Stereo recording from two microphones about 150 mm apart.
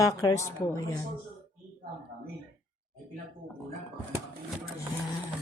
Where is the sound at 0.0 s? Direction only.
20° left (ahead or behind).